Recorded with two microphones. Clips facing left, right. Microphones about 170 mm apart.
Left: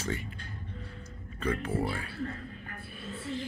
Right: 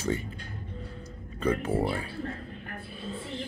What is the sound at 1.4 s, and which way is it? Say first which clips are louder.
Speech: right 4 dB; 25° right (ahead or behind).